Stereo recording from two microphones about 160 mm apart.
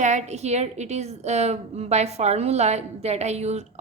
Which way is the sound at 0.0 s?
45° right (ahead or behind).